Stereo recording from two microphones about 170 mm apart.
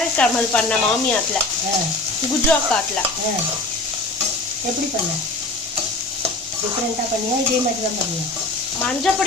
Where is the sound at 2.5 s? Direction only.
10° left (ahead or behind).